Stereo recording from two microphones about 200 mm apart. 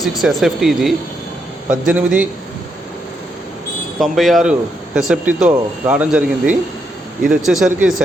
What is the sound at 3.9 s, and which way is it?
Speech, centre (ahead or behind).